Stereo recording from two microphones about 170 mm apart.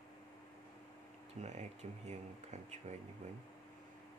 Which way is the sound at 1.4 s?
40° right (ahead or behind).